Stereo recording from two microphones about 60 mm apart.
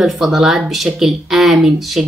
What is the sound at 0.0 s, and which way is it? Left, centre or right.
Speech, centre.